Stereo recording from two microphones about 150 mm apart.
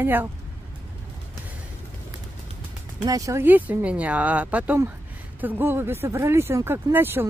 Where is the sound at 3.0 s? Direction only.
25° right (ahead or behind).